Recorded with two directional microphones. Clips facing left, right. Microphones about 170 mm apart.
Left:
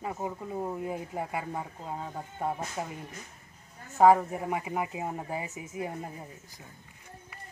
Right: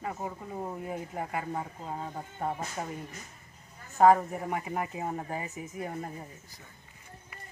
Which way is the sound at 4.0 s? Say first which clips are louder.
Left 1 dB; 10° left (ahead or behind).